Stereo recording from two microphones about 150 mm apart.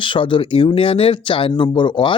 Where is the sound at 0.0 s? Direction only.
35° left (ahead or behind).